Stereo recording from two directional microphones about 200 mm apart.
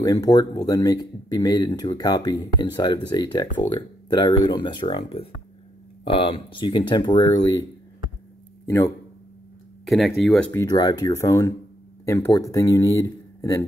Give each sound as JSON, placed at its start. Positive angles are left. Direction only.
{"t": 0.0, "sound": "speech", "side_deg": 20}
{"t": 8.6, "sound": "a man's voice", "side_deg": 15}
{"t": 9.8, "sound": "speech", "side_deg": 0}
{"t": 10.5, "sound": "speech", "side_deg": 15}